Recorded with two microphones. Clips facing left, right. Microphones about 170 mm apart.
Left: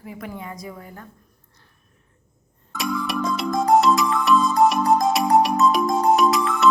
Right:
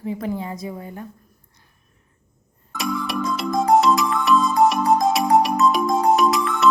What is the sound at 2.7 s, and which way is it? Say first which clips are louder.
Music: even; centre (ahead or behind).